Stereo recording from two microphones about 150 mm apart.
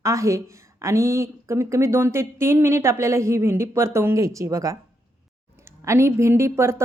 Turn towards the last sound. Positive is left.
turn(degrees=-15)  # may be behind; listen again after turning